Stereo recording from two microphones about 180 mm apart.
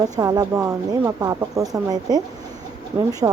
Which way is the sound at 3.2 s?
20° right (ahead or behind).